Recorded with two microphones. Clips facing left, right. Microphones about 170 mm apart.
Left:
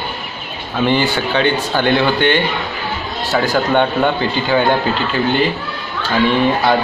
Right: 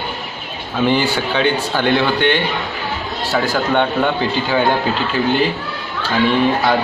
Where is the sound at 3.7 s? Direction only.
Centre (ahead or behind).